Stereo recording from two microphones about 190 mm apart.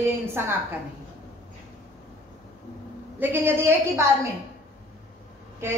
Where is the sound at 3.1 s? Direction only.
10° right (ahead or behind).